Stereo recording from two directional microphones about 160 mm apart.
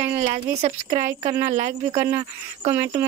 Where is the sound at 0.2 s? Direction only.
45° right (ahead or behind).